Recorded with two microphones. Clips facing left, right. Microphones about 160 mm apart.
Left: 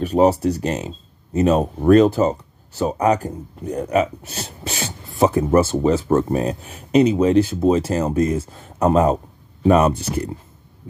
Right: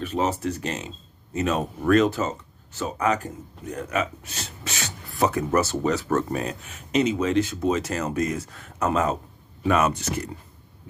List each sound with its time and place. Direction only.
0.0 s speech: 35° left (ahead or behind)